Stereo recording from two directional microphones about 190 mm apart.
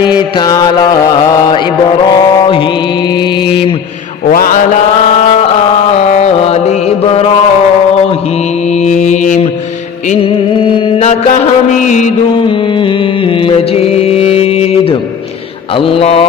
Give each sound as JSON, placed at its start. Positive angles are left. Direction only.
{"t": 0.0, "sound": "mantra", "side_deg": 25}
{"t": 4.3, "sound": "mantra", "side_deg": 50}
{"t": 5.9, "sound": "carnatic music", "side_deg": 35}
{"t": 8.7, "sound": "mantra", "side_deg": 35}
{"t": 10.1, "sound": "mantra", "side_deg": 30}
{"t": 12.3, "sound": "music", "side_deg": 25}
{"t": 15.7, "sound": "speech", "side_deg": 30}